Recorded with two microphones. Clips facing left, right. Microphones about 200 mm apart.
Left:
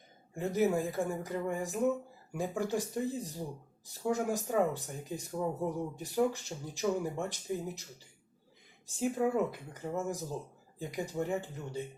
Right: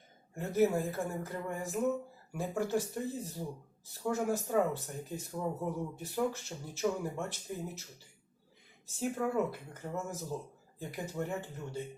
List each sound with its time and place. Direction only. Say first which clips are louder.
0.3 s speech: even; 15° left (ahead or behind)